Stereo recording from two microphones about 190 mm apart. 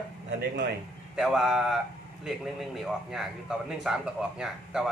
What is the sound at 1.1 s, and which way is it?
Speech, centre (ahead or behind).